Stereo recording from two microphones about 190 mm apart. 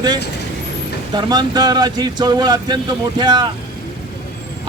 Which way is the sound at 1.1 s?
20° right (ahead or behind).